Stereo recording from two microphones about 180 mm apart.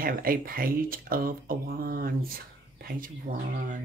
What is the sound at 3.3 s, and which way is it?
Speech, 55° right (ahead or behind).